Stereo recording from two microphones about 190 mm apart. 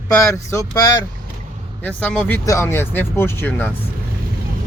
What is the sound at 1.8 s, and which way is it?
Speech, 5° left (ahead or behind).